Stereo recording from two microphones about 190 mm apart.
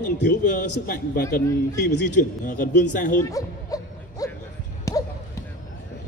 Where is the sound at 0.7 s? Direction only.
60° left (ahead or behind).